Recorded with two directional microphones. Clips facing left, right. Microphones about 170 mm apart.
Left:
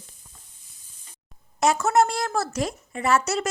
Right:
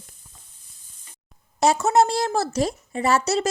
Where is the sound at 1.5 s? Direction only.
30° right (ahead or behind).